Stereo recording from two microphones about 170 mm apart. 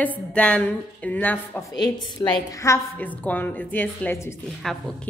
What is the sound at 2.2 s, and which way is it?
A woman's voice, 25° left (ahead or behind).